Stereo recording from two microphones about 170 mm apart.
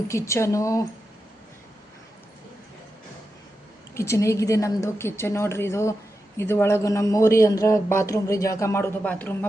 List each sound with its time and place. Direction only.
0.1 s a man's voice: 15° left (ahead or behind)
3.9 s a man's voice: 15° left (ahead or behind)